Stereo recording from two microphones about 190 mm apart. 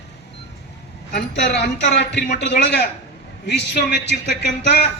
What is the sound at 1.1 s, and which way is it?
A man's voice, 60° left (ahead or behind).